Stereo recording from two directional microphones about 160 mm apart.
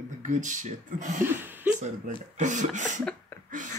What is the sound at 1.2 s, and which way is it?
Chuckle, 10° right (ahead or behind).